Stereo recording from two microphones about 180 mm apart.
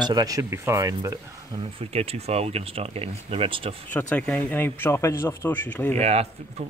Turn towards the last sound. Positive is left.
turn(degrees=-35)  # may be behind; listen again after turning